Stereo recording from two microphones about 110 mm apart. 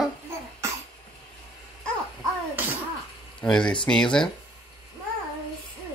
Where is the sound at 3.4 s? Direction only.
10° left (ahead or behind).